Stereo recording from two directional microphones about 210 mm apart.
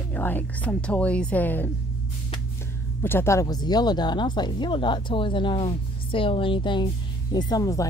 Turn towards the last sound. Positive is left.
turn(degrees=15)  # may be behind; listen again after turning